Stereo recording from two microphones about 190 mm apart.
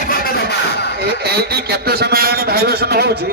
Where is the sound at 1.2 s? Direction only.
55° right (ahead or behind).